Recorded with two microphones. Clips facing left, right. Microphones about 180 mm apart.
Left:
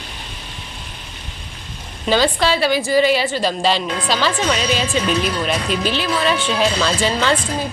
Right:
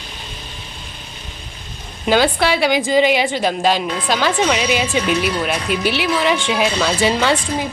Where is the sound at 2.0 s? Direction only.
15° right (ahead or behind).